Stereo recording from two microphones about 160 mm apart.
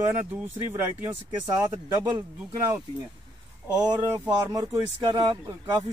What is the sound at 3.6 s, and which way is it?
Speech, 25° right (ahead or behind).